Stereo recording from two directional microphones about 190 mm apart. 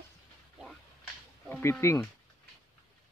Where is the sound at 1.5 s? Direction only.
15° left (ahead or behind).